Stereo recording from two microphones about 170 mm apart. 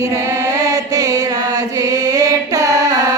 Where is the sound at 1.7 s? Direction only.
20° right (ahead or behind).